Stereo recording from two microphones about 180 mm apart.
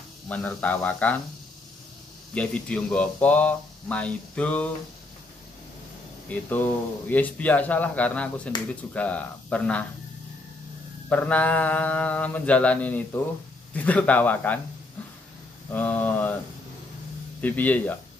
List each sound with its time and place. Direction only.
0.3 s speech: 10° left (ahead or behind)
2.3 s speech: 5° left (ahead or behind)
6.2 s speech: 10° left (ahead or behind)
8.5 s speech: 25° left (ahead or behind)
8.9 s speech: 10° left (ahead or behind)
11.1 s speech: 10° left (ahead or behind)
15.7 s speech: 10° left (ahead or behind)
17.4 s speech: 10° left (ahead or behind)